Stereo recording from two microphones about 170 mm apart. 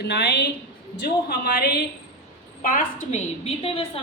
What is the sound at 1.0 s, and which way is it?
Speech, 65° left (ahead or behind).